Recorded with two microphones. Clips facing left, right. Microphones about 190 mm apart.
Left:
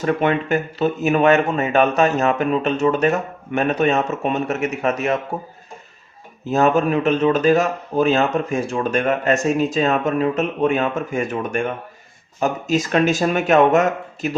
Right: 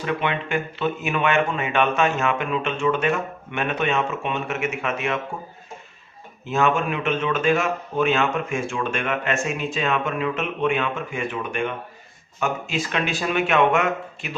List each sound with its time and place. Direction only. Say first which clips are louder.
0.0 s speech: left 6 dB; 45° left (ahead or behind)
6.4 s speech: left 5 dB; 40° left (ahead or behind)